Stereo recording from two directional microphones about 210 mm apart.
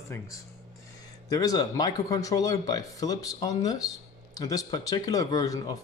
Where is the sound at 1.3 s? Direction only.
15° left (ahead or behind).